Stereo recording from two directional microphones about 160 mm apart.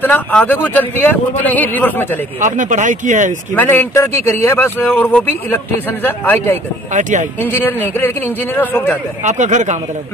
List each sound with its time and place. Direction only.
0.0 s a man's voice: 10° left (ahead or behind)
2.4 s speech: 50° right (ahead or behind)
3.5 s a man's voice: 10° left (ahead or behind)
6.9 s speech: 50° right (ahead or behind)
7.4 s a man's voice: 10° left (ahead or behind)
9.2 s speech: 50° right (ahead or behind)